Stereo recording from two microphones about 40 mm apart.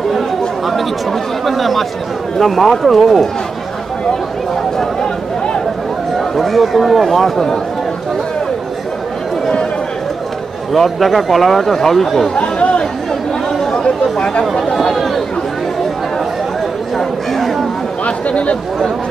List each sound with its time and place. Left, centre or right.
1.4 s speech: centre
4.7 s a sound: centre
6.1 s speech: centre
10.7 s speech: centre
12.4 s chatter: left
13.5 s chatter: centre
14.1 s speech: left
14.7 s speech: centre
16.9 s chatter: centre
18.0 s speech: left